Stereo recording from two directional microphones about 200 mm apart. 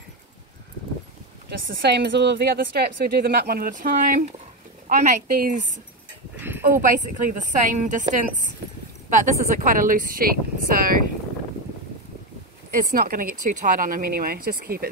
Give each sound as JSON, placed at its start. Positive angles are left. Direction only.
{"t": 1.8, "sound": "a woman's voice", "side_deg": -55}
{"t": 6.8, "sound": "a woman's voice", "side_deg": -40}
{"t": 12.7, "sound": "speech", "side_deg": -45}